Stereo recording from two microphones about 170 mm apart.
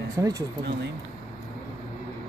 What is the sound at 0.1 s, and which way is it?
Speech, 20° right (ahead or behind).